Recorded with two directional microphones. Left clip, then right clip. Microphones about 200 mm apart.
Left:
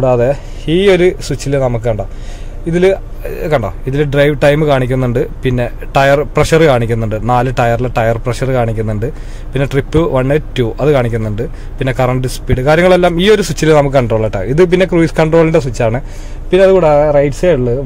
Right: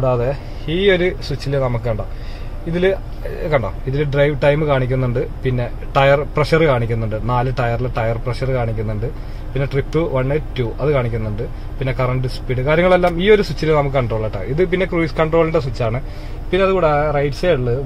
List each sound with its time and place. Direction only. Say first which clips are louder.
0.0 s speech: left 7 dB; 50° left (ahead or behind)